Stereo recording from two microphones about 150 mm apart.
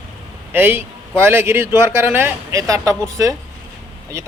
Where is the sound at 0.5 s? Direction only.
15° right (ahead or behind).